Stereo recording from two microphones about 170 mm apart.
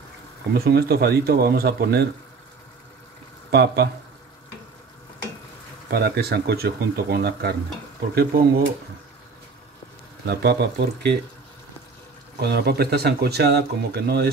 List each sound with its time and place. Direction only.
0.7 s speech: 65° right (ahead or behind)
3.5 s speech: 70° right (ahead or behind)
5.9 s speech: 70° right (ahead or behind)
10.2 s speech: 70° right (ahead or behind)
12.4 s speech: 70° right (ahead or behind)